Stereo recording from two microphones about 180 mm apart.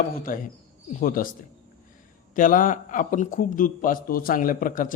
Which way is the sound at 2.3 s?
45° left (ahead or behind).